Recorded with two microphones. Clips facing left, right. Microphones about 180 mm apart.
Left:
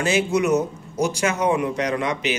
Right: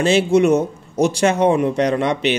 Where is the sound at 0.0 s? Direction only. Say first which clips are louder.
Right 6 dB; 30° right (ahead or behind).